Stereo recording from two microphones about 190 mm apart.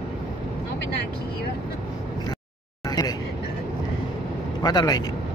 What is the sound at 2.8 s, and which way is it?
Vehicle, 20° left (ahead or behind).